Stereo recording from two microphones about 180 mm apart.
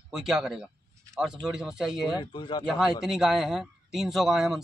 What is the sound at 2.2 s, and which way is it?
Speech, 25° left (ahead or behind).